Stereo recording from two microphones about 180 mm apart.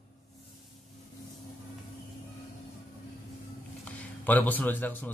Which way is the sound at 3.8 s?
10° left (ahead or behind).